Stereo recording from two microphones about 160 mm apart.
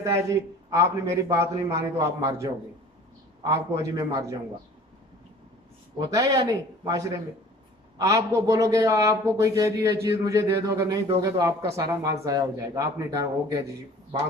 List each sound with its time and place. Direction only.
0.0 s speech: 20° right (ahead or behind)
6.1 s speech: 20° right (ahead or behind)